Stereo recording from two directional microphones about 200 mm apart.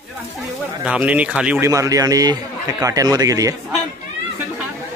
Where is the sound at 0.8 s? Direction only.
5° right (ahead or behind).